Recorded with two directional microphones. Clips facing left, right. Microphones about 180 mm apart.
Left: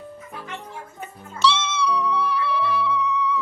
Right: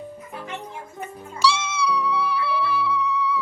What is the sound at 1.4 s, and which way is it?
Music, 10° right (ahead or behind).